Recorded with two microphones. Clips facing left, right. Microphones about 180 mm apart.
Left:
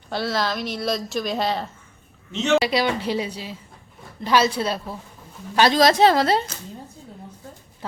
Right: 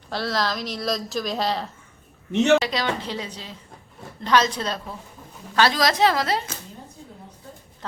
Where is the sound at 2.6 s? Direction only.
10° left (ahead or behind).